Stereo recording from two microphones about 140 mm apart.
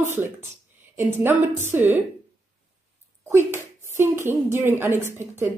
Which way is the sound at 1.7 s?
15° right (ahead or behind).